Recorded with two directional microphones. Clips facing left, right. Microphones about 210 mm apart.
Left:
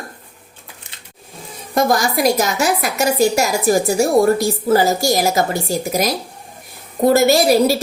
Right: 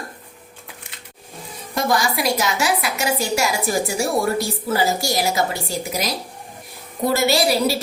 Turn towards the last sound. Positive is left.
turn(degrees=45)  # may be behind; listen again after turning